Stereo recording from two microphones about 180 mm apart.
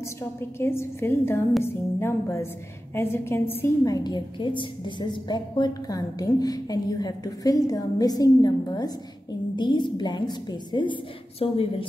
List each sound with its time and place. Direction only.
0.4 s a woman's voice: 15° left (ahead or behind); by 11.6 s 30° left (ahead or behind)